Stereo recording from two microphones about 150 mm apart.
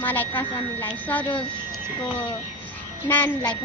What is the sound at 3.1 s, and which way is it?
Speech, 15° left (ahead or behind).